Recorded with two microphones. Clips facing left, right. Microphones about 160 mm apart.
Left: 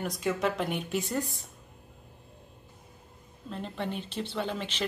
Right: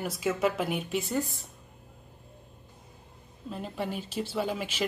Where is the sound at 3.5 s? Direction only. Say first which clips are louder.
Right 1 dB; 5° right (ahead or behind).